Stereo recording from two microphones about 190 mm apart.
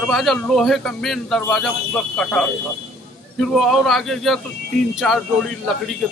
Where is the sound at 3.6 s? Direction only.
Centre (ahead or behind).